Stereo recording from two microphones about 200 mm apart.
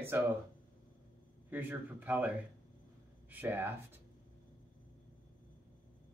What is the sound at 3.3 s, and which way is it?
Speech, 10° right (ahead or behind).